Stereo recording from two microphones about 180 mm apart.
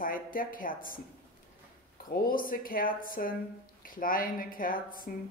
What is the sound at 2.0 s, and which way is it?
A woman's voice, 50° left (ahead or behind).